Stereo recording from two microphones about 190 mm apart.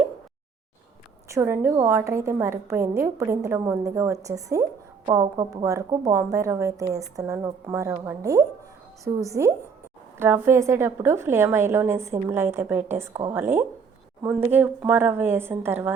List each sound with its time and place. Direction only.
1.3 s a woman's voice: 15° right (ahead or behind)